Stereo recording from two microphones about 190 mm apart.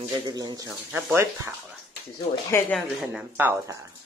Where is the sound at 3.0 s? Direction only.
5° right (ahead or behind).